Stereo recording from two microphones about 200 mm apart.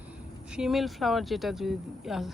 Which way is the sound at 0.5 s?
Centre (ahead or behind).